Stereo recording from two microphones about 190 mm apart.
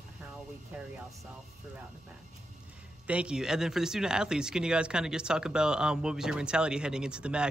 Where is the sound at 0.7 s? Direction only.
10° right (ahead or behind).